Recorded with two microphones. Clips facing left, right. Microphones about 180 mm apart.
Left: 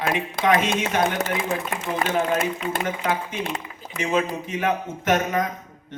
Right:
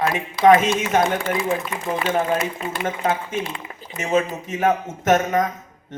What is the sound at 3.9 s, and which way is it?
A man's voice, 45° right (ahead or behind).